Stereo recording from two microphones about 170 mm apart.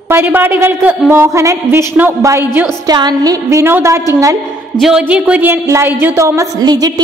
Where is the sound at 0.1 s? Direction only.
15° right (ahead or behind).